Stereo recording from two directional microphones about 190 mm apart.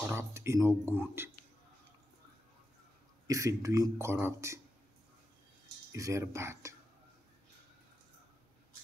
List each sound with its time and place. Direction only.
0.0 s speech: 15° right (ahead or behind)
3.3 s speech: 15° right (ahead or behind)
5.9 s speech: 15° right (ahead or behind)